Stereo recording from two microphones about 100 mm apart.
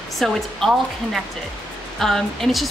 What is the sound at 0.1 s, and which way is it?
A woman's voice, 5° left (ahead or behind).